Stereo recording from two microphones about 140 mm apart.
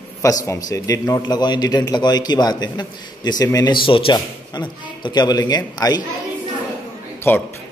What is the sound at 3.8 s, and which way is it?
A man's voice, 40° left (ahead or behind).